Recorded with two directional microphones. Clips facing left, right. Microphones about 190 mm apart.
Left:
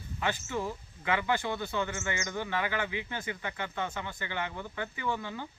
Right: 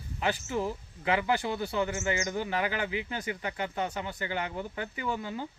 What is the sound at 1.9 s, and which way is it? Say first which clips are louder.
Speech: right 5 dB; 35° right (ahead or behind).